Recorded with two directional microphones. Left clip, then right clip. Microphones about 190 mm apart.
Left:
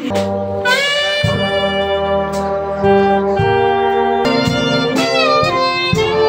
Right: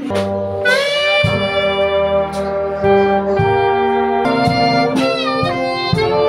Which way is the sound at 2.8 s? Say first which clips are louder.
Left 1 dB; 10° right (ahead or behind).